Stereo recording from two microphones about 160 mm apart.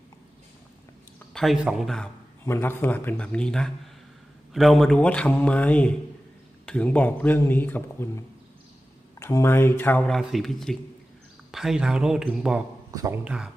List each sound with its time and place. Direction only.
1.3 s speech: centre (ahead or behind)
2.4 s speech: 15° left (ahead or behind); by 12.6 s 5° right (ahead or behind)
12.9 s speech: 20° right (ahead or behind)
13.2 s speech: 5° right (ahead or behind)